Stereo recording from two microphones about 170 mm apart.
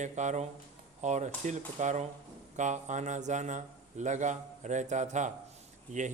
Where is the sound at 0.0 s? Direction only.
45° right (ahead or behind).